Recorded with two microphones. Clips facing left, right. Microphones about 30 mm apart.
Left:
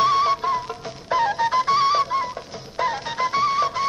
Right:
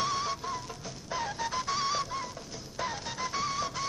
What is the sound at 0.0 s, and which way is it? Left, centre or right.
Music, left.